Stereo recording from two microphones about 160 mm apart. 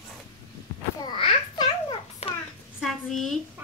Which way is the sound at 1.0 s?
30° left (ahead or behind).